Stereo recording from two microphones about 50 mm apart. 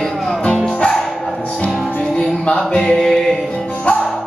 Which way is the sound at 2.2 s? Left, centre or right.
Centre.